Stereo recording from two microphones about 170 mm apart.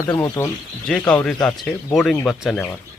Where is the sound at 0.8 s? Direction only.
5° left (ahead or behind).